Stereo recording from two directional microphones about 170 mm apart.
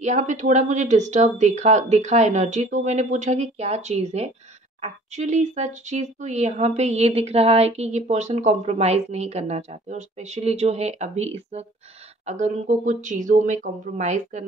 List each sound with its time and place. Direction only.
0.0 s speech: 45° right (ahead or behind)